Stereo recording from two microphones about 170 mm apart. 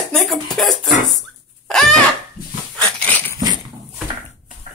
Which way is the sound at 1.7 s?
Centre (ahead or behind).